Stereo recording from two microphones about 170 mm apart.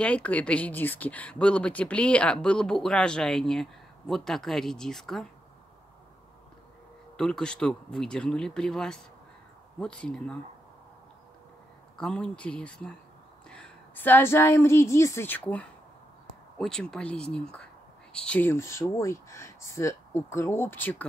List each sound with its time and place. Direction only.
0.0 s speech: 10° left (ahead or behind)
7.2 s speech: 5° left (ahead or behind)
12.0 s a woman's voice: 5° left (ahead or behind)